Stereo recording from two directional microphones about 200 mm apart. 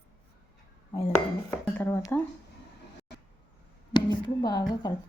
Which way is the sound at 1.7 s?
10° left (ahead or behind).